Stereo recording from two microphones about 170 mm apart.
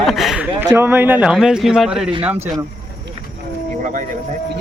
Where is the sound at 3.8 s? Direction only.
50° right (ahead or behind).